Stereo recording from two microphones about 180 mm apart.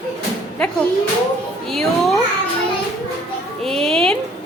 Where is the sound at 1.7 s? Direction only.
Centre (ahead or behind).